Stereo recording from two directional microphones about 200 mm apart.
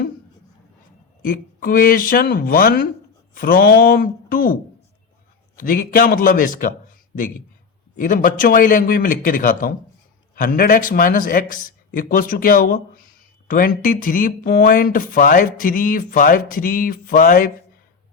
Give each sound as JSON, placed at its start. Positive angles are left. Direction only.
{"t": 1.2, "sound": "speech", "side_deg": 45}
{"t": 5.5, "sound": "speech", "side_deg": 45}
{"t": 7.9, "sound": "speech", "side_deg": 40}